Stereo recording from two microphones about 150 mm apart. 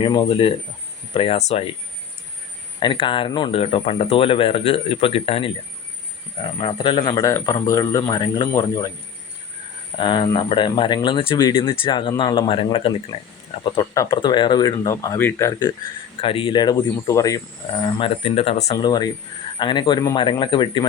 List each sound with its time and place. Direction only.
0.0 s speech: 30° left (ahead or behind)
2.8 s speech: 35° left (ahead or behind)
10.0 s speech: 30° left (ahead or behind)
16.2 s speech: 35° left (ahead or behind)
18.7 s speech: 25° left (ahead or behind)